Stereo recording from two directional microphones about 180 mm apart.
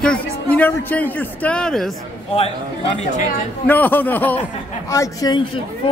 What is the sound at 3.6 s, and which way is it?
Speech, 10° left (ahead or behind).